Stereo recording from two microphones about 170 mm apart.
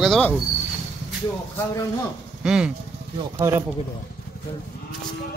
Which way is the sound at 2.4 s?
5° right (ahead or behind).